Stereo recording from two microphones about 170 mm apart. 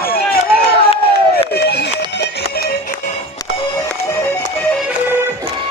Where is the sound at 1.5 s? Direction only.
70° left (ahead or behind).